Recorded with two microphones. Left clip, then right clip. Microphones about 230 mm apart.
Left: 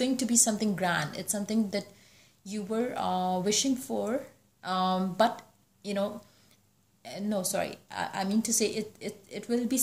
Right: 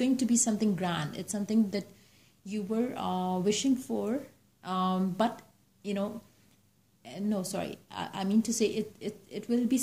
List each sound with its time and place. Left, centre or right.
0.0 s a woman's voice: centre